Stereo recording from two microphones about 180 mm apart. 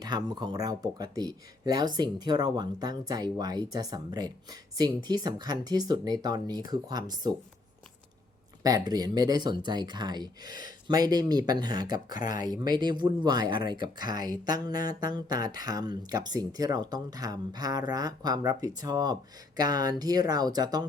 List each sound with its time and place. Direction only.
0.0 s speech: 25° right (ahead or behind)
8.6 s speech: 20° right (ahead or behind)
12.1 s speech: 50° left (ahead or behind)
12.5 s speech: 25° right (ahead or behind)